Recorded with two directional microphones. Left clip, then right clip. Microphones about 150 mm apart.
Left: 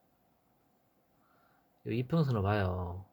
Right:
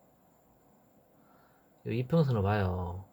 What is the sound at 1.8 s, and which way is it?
Speech, 15° left (ahead or behind).